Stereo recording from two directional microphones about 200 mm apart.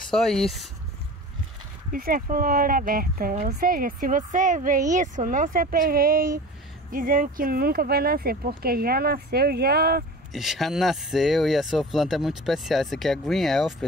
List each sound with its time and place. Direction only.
0.1 s speech: centre (ahead or behind)
1.9 s speech: 45° right (ahead or behind)
10.3 s speech: centre (ahead or behind)